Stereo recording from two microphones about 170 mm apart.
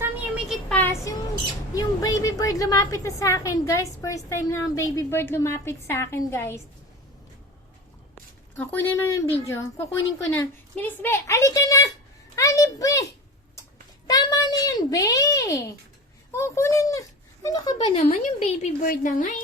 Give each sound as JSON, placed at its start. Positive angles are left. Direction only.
{"t": 0.0, "sound": "a sound", "side_deg": -5}
{"t": 0.7, "sound": "a sound", "side_deg": 10}
{"t": 1.7, "sound": "squawk", "side_deg": 20}
{"t": 2.4, "sound": "a woman's voice", "side_deg": 20}
{"t": 8.5, "sound": "a woman's voice", "side_deg": 10}
{"t": 14.1, "sound": "a child's voice", "side_deg": 20}
{"t": 18.0, "sound": "a woman's voice", "side_deg": 40}